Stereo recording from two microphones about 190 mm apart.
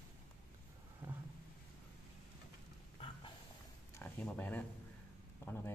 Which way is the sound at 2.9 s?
30° left (ahead or behind).